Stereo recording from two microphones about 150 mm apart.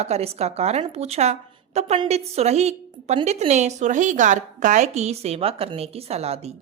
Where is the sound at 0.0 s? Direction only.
45° right (ahead or behind).